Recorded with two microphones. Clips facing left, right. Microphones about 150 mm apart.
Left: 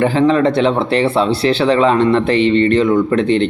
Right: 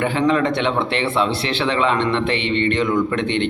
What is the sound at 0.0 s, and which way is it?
Speech, 35° left (ahead or behind).